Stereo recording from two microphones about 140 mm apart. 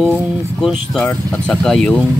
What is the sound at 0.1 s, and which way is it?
Speech, centre (ahead or behind).